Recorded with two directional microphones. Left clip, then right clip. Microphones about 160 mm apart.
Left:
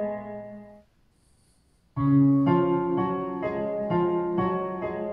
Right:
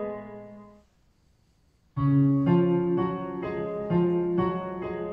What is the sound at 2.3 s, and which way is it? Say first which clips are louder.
Music: left 2 dB; 45° left (ahead or behind).